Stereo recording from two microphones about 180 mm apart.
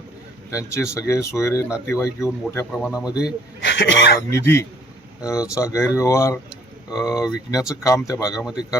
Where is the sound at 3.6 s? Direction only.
85° left.